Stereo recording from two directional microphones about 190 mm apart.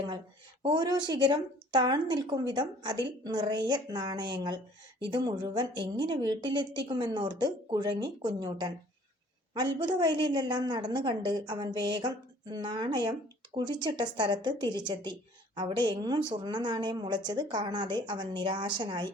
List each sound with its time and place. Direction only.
0.6 s a woman's voice: 25° right (ahead or behind)
9.7 s a woman's voice: 20° right (ahead or behind)